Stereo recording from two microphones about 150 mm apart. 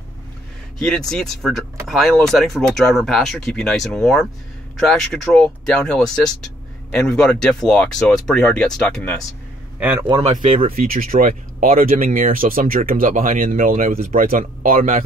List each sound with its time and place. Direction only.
0.7 s speech: 5° left (ahead or behind)
9.8 s a man's voice: 15° right (ahead or behind)
10.7 s speech: 75° right (ahead or behind)